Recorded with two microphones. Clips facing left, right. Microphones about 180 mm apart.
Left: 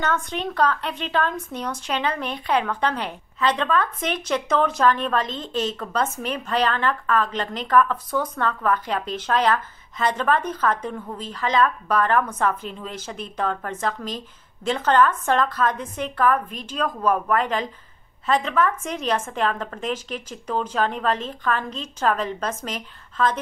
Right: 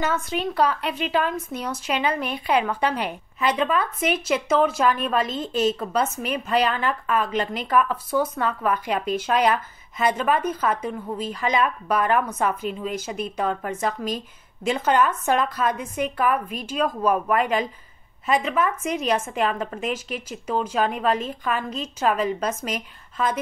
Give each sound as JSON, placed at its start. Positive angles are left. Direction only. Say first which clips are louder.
{"t": 0.0, "sound": "a woman's voice", "louder": "right 1 dB", "side_deg": -5}